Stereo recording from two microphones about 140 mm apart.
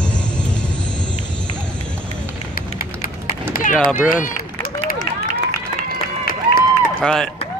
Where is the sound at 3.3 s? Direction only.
90° left.